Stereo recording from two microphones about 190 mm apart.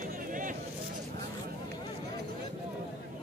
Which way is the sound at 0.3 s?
45° right (ahead or behind).